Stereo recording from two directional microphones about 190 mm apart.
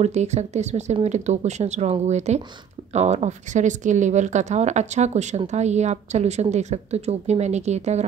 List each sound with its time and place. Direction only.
0.0 s speech: 35° right (ahead or behind)